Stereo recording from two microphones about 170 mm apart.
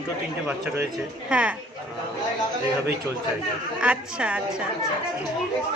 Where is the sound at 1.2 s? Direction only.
5° right (ahead or behind).